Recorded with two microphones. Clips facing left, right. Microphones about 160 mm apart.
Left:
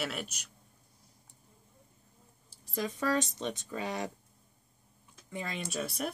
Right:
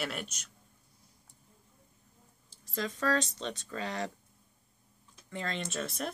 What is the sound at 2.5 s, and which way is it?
Speech, 15° left (ahead or behind).